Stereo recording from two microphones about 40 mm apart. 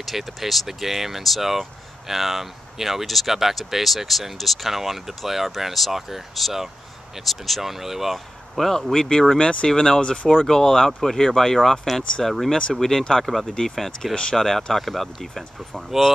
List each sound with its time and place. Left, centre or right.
0.0 s speech: centre
8.9 s speech: centre
9.4 s speech: left; by 16.1 s centre